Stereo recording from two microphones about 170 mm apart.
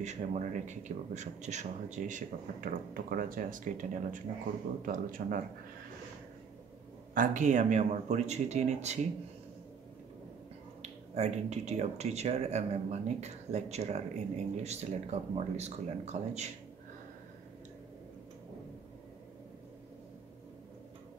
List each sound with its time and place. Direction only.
0.0 s speech: 45° right (ahead or behind)
7.2 s speech: 45° right (ahead or behind)
10.8 s speech: 40° right (ahead or behind)